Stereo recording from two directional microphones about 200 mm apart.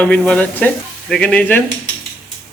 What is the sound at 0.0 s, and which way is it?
Speech, 5° left (ahead or behind).